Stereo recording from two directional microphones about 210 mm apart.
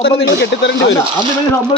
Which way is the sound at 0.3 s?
55° left (ahead or behind).